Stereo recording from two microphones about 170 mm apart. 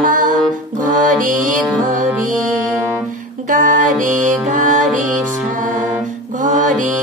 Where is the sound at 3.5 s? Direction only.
50° right (ahead or behind).